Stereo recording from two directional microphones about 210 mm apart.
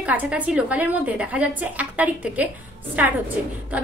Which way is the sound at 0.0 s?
5° right (ahead or behind).